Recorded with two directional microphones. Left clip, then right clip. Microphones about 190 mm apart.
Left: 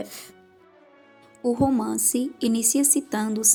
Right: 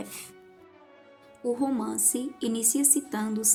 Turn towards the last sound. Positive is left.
turn(degrees=35)  # may be behind; listen again after turning